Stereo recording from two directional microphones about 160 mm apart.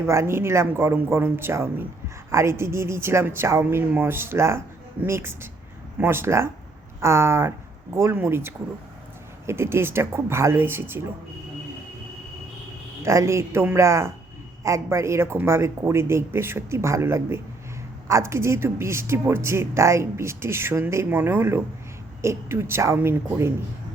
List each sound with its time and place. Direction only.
0.0 s speech: 15° right (ahead or behind)
13.0 s speech: 20° right (ahead or behind)